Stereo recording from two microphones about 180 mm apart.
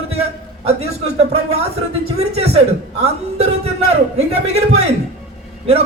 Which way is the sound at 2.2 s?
35° right (ahead or behind).